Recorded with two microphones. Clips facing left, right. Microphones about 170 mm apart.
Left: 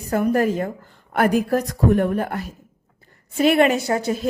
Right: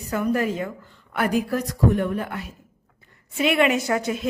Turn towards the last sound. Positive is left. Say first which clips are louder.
# left 2 dB
turn(degrees=35)  # may be behind; listen again after turning